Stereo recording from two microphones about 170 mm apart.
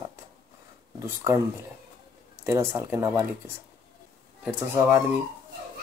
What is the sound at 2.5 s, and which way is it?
Speech, 15° right (ahead or behind).